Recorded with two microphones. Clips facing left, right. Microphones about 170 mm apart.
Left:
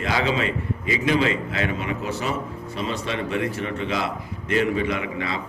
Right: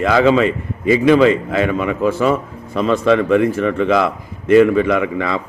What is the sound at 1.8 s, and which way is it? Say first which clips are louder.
A man's voice: right 11 dB; 50° right (ahead or behind).